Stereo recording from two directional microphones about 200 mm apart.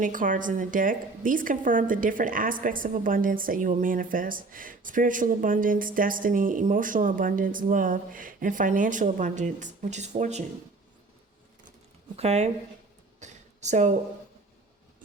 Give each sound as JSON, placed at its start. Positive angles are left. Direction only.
{"t": 0.0, "sound": "a woman's voice", "side_deg": -40}
{"t": 12.1, "sound": "a woman's voice", "side_deg": -30}
{"t": 13.1, "sound": "a sound", "side_deg": -35}